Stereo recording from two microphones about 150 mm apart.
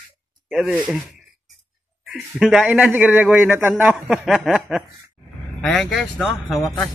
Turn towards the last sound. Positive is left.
turn(degrees=0)  # may be behind; listen again after turning